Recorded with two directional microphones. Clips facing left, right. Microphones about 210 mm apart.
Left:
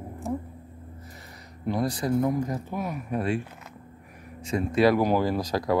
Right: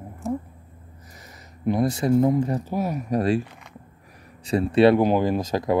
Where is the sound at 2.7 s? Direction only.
40° right (ahead or behind).